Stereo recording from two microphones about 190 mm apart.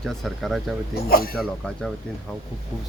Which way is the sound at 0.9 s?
50° left (ahead or behind).